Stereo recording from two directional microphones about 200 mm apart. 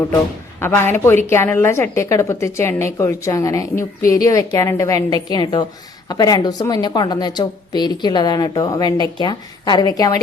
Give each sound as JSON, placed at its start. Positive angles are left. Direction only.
{"t": 0.6, "sound": "a woman's voice", "side_deg": 10}